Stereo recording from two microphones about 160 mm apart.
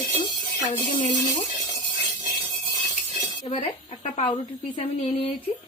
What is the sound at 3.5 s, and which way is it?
A woman's voice, 45° left (ahead or behind).